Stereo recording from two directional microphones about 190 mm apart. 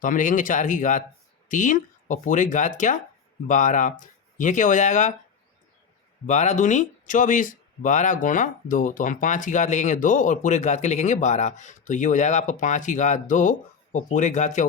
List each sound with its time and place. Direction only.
0.0 s speech: 45° left (ahead or behind)
6.2 s speech: 40° left (ahead or behind)